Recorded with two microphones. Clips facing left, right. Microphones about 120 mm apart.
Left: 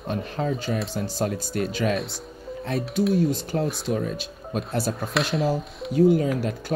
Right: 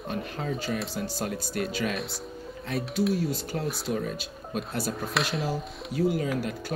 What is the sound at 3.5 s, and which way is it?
Speech, 30° left (ahead or behind).